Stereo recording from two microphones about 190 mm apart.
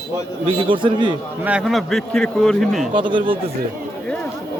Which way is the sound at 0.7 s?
25° right (ahead or behind).